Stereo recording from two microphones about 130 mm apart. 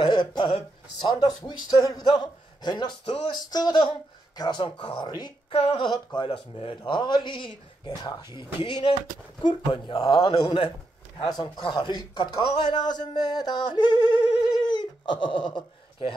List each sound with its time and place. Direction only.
0.0 s a man's voice: 35° left (ahead or behind)
14.7 s a sound: 35° left (ahead or behind)
15.5 s speech: 40° left (ahead or behind)